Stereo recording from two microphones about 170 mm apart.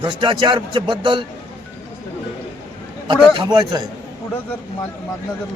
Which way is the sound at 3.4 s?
25° right (ahead or behind).